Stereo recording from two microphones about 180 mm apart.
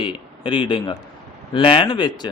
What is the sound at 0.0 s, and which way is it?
A man's voice, 30° left (ahead or behind).